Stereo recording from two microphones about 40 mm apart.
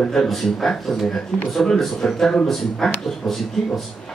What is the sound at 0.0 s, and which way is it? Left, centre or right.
A man's voice, centre.